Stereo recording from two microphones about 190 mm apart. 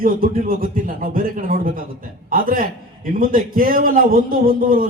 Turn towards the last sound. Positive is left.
turn(degrees=-45)  # may be behind; listen again after turning